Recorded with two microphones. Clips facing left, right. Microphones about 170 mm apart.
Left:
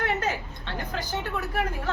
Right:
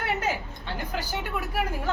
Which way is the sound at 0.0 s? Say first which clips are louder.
Left 1 dB; 10° right (ahead or behind).